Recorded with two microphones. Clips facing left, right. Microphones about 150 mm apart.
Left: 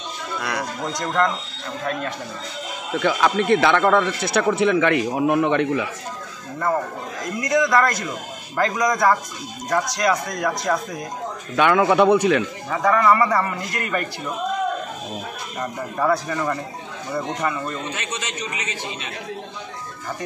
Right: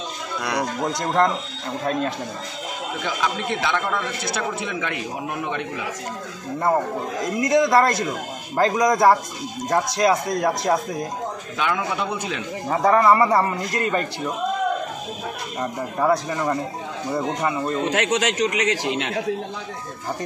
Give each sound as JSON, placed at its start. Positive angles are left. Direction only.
{"t": 0.4, "sound": "a man's voice", "side_deg": -20}
{"t": 3.0, "sound": "a man's voice", "side_deg": 65}
{"t": 7.3, "sound": "a man's voice", "side_deg": -25}
{"t": 11.5, "sound": "a man's voice", "side_deg": 65}
{"t": 12.6, "sound": "a man's voice", "side_deg": -35}
{"t": 16.0, "sound": "a man's voice", "side_deg": -20}
{"t": 17.8, "sound": "a man's voice", "side_deg": -90}